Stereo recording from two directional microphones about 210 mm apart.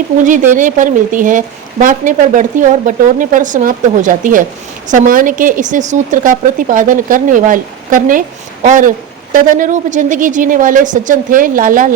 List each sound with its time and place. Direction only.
0.3 s a woman's voice: 35° right (ahead or behind)